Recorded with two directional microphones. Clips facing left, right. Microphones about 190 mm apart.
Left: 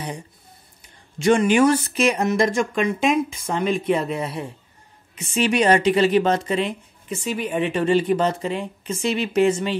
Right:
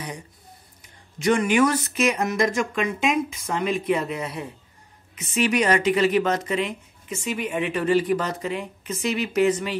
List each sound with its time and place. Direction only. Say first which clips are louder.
1.2 s a woman's voice: left 3 dB; 30° left (ahead or behind)